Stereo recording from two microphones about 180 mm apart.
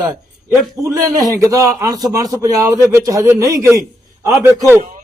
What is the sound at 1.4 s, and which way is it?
A man's voice, 20° right (ahead or behind).